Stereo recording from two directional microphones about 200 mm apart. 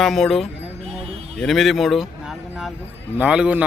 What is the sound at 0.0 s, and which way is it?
Speech, centre (ahead or behind).